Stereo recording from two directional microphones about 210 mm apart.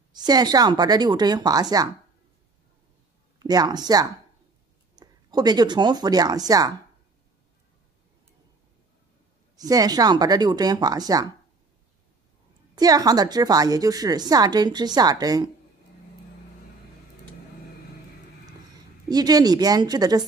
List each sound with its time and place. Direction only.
0.1 s a woman's voice: 20° right (ahead or behind)
3.3 s speech: 20° right (ahead or behind)
9.6 s a woman's voice: 20° right (ahead or behind)
12.7 s a woman's voice: 15° right (ahead or behind)
19.0 s a woman's voice: 20° right (ahead or behind)